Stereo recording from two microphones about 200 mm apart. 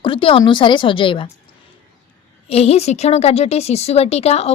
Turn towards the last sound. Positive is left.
turn(degrees=30)  # may be behind; listen again after turning